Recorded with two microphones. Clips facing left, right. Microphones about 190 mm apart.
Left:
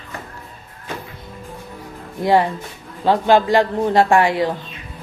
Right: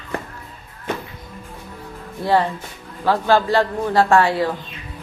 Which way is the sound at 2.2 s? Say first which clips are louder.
Left 2 dB; 15° left (ahead or behind).